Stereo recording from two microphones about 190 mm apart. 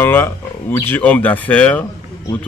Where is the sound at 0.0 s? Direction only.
10° left (ahead or behind).